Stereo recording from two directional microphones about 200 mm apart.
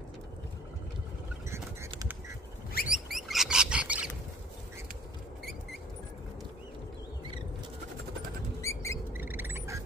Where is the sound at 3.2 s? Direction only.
Centre (ahead or behind).